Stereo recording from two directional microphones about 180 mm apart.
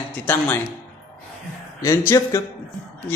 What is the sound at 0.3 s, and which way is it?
Speech, 10° left (ahead or behind).